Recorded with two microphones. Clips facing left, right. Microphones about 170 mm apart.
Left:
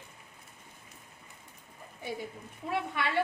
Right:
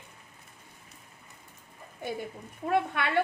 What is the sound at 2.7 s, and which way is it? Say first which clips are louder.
Speech: right 5 dB; 55° right (ahead or behind).